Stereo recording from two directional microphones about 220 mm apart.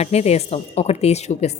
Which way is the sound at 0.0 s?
30° left (ahead or behind).